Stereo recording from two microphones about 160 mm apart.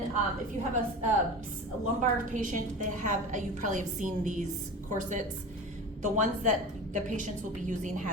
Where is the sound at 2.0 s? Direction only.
55° right (ahead or behind).